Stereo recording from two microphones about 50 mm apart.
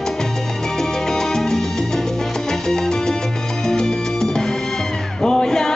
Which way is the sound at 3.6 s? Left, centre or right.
Centre.